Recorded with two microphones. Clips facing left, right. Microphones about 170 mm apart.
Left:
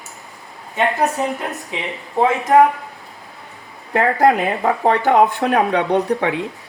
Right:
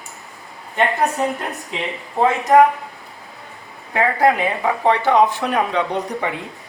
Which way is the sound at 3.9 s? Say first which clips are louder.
Left 2 dB; 40° left (ahead or behind).